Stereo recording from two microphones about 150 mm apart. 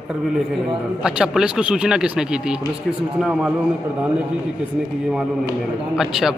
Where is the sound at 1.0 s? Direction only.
5° right (ahead or behind).